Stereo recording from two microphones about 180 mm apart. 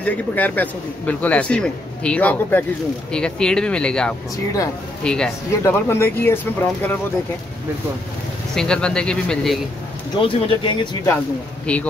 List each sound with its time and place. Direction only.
0.0 s a man's voice: 10° left (ahead or behind)
8.5 s speech: 5° left (ahead or behind)
10.2 s speech: 30° left (ahead or behind)
11.6 s speech: 5° left (ahead or behind)